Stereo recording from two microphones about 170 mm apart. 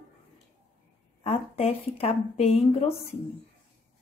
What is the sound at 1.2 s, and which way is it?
Speech, 35° left (ahead or behind).